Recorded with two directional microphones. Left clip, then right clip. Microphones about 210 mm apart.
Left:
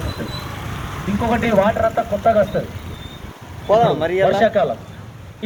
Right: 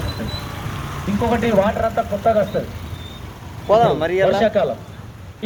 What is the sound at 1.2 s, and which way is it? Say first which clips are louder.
Speech: even; 5° right (ahead or behind).